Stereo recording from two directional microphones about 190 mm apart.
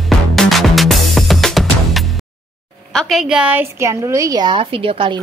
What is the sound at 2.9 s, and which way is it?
A woman's voice, centre (ahead or behind).